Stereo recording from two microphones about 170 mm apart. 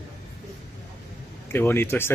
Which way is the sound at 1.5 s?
15° left (ahead or behind).